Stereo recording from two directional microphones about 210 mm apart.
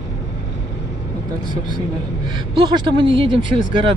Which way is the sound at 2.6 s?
20° right (ahead or behind).